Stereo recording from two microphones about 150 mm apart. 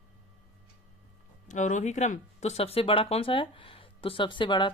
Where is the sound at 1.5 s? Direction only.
55° left (ahead or behind).